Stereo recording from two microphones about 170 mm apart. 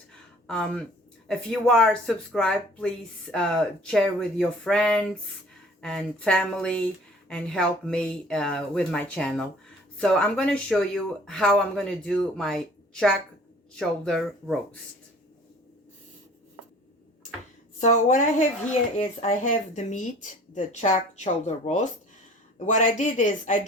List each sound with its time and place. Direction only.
0.1 s a sound: 5° left (ahead or behind)
1.3 s speech: 5° left (ahead or behind)
17.7 s speech: 45° left (ahead or behind)